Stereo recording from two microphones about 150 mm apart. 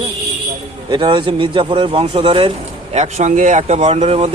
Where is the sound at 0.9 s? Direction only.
30° right (ahead or behind).